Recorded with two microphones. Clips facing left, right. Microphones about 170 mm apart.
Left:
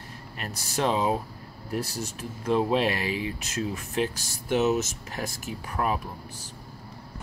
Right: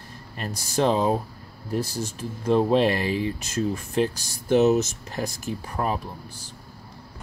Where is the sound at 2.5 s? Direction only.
5° left (ahead or behind).